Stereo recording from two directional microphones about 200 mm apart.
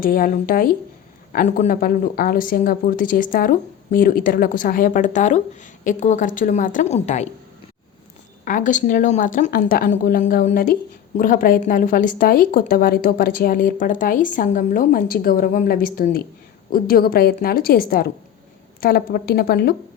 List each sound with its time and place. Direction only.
0.0 s a woman's voice: 45° left (ahead or behind)
8.4 s a woman's voice: 40° left (ahead or behind)